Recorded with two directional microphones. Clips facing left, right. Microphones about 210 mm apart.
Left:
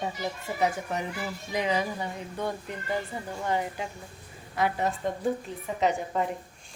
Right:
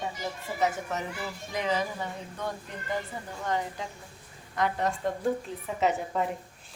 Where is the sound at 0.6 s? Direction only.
15° left (ahead or behind).